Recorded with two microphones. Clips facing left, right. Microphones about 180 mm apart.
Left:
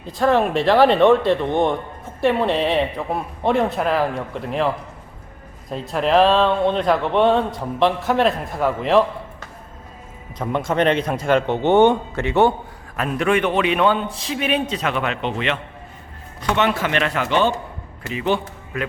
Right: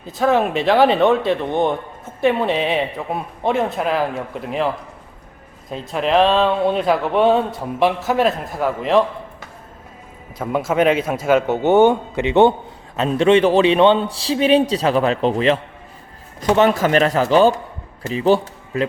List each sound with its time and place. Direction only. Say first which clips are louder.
0.0 s speech: even; centre (ahead or behind)
10.3 s speech: right 2 dB; 5° right (ahead or behind)
12.2 s a man's voice: right 4 dB; 20° right (ahead or behind)